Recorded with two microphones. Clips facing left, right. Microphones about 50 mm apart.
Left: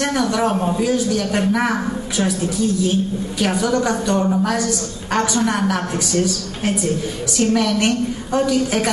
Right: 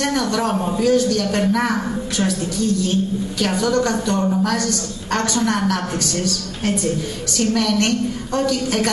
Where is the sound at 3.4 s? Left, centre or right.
Centre.